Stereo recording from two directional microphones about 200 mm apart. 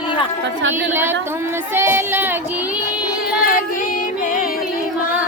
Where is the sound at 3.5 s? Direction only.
45° left (ahead or behind).